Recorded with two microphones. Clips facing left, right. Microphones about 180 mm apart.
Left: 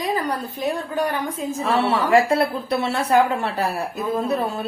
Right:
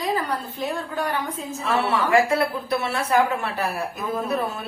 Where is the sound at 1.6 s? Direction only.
30° left (ahead or behind).